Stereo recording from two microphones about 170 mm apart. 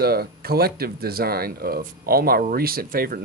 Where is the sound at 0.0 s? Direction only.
65° right (ahead or behind).